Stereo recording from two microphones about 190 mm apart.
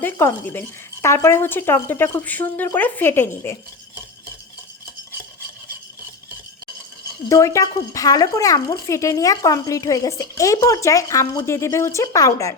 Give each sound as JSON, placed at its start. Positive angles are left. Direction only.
{"t": 0.0, "sound": "speech", "side_deg": 10}
{"t": 7.3, "sound": "speech", "side_deg": 15}